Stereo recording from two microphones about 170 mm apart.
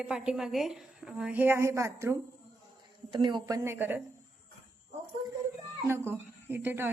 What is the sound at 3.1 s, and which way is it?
Speech, 30° right (ahead or behind).